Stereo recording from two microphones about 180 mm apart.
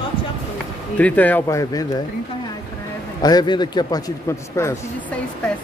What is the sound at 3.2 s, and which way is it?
Speech, 20° left (ahead or behind).